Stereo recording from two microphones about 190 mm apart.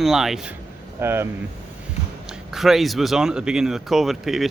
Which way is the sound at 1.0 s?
15° right (ahead or behind).